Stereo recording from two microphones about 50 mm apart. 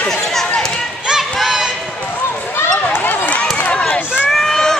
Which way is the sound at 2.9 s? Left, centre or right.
Left.